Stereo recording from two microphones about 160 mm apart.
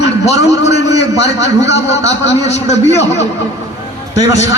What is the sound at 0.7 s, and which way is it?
A man's voice, 90° left.